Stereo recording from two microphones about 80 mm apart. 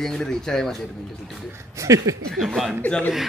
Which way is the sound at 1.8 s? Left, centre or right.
Right.